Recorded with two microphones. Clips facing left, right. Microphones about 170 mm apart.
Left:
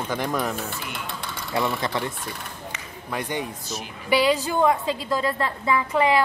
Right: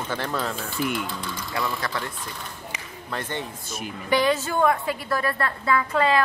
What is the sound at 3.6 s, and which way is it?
Speech, 50° right (ahead or behind).